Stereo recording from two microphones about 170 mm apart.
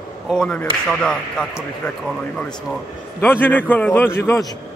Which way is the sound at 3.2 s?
10° left (ahead or behind).